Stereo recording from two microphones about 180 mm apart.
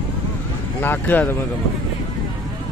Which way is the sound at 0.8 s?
10° left (ahead or behind).